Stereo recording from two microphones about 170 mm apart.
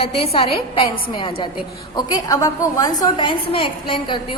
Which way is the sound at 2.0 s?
25° left (ahead or behind).